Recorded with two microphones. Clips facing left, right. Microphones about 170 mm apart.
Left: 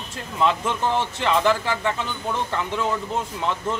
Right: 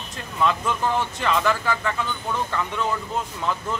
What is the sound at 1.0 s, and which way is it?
Speech, 30° left (ahead or behind).